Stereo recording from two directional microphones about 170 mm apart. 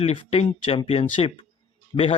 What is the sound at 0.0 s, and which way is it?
Speech, 35° left (ahead or behind).